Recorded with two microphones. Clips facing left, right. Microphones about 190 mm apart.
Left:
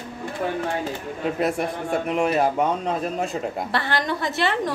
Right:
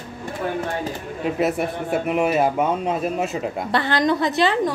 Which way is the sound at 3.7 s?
20° right (ahead or behind).